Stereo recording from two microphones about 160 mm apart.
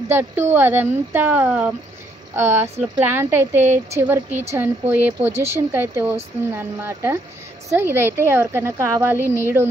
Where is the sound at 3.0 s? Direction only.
15° right (ahead or behind).